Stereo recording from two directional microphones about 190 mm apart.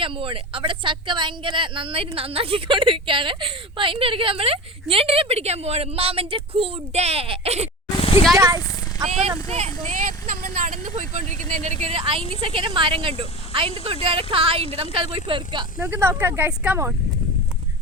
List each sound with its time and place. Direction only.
0.0 s speech: 25° right (ahead or behind)
8.4 s a sound: 15° right (ahead or behind)
9.0 s a woman's voice: 35° right (ahead or behind)
15.8 s speech: 10° right (ahead or behind)